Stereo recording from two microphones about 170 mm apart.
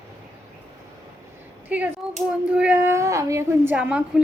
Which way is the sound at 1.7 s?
10° right (ahead or behind).